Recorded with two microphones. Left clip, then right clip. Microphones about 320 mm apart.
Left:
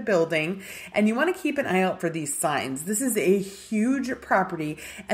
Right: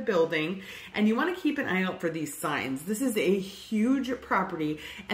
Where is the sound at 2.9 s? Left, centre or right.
Left.